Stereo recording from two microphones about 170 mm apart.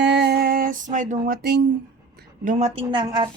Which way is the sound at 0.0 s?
85° right.